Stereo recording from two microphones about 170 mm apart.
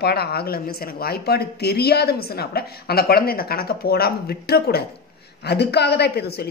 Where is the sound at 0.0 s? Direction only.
70° left (ahead or behind).